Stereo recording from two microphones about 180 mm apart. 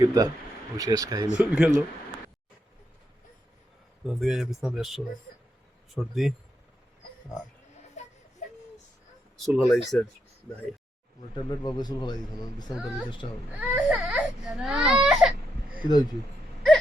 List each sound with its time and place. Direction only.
0.0 s speech: 20° right (ahead or behind)
1.4 s speech: 5° right (ahead or behind)
4.0 s speech: centre (ahead or behind)
8.0 s a sound: 40° left (ahead or behind)
9.4 s speech: centre (ahead or behind)
11.4 s speech: 25° left (ahead or behind)
13.6 s speech: 5° right (ahead or behind)
14.2 s baby cry: centre (ahead or behind)
15.8 s speech: 25° left (ahead or behind)